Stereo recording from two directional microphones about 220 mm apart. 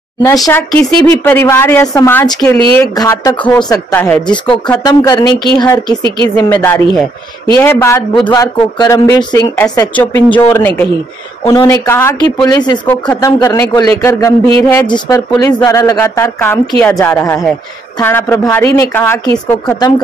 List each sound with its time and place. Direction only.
0.2 s a woman's voice: 10° left (ahead or behind)
6.0 s speech: 20° right (ahead or behind)
6.3 s a woman's voice: 10° left (ahead or behind)